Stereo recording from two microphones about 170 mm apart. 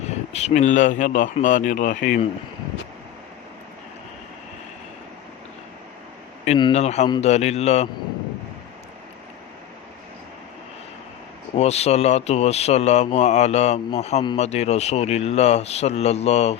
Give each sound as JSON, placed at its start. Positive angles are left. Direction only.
{"t": 0.0, "sound": "speech", "side_deg": 40}
{"t": 6.7, "sound": "speech", "side_deg": 40}
{"t": 11.5, "sound": "speech", "side_deg": 40}